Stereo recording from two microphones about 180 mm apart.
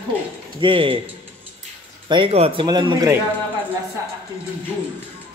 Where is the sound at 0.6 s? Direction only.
30° right (ahead or behind).